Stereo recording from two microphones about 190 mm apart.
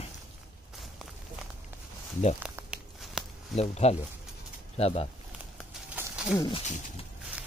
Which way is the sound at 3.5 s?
35° left (ahead or behind).